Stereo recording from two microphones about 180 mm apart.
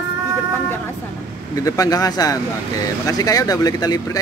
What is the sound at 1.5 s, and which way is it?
Speech, 20° left (ahead or behind).